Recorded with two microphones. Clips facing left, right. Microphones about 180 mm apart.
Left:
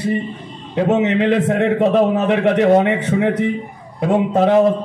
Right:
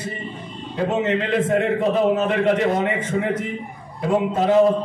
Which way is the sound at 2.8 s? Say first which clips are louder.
Left 6 dB; 70° left (ahead or behind).